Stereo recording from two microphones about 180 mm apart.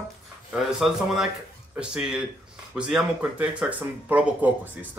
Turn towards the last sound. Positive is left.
turn(degrees=-10)  # may be behind; listen again after turning